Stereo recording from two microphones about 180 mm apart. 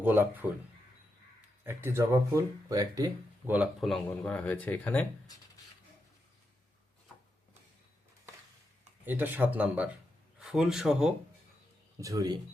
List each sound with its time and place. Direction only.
0.0 s speech: 10° right (ahead or behind)
1.6 s speech: 15° right (ahead or behind)
3.5 s speech: 5° right (ahead or behind)
9.0 s speech: 10° right (ahead or behind)
11.9 s speech: 20° right (ahead or behind)